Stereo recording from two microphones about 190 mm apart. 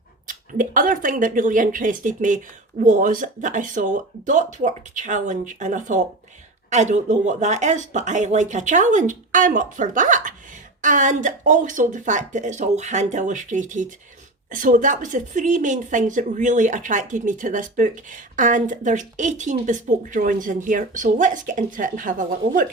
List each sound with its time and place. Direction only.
0.3 s speech: 45° right (ahead or behind)